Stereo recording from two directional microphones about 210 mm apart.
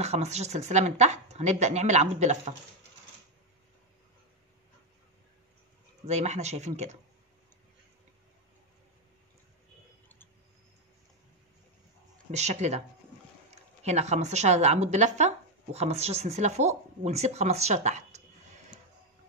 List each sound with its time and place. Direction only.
0.0 s speech: 30° right (ahead or behind)
6.0 s speech: 30° right (ahead or behind)
12.3 s speech: 30° right (ahead or behind)
13.8 s speech: 30° right (ahead or behind)